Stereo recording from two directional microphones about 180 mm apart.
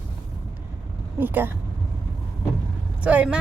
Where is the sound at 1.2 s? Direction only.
10° right (ahead or behind).